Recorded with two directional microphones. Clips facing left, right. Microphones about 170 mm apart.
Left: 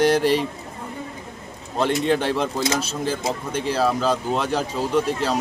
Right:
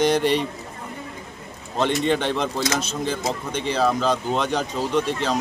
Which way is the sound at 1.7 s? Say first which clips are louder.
Left 1 dB; 5° left (ahead or behind).